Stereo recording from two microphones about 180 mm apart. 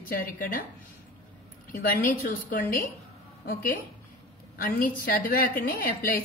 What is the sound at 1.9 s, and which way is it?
A woman's voice, 50° left (ahead or behind).